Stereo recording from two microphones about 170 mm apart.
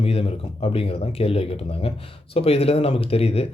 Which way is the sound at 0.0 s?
35° left (ahead or behind).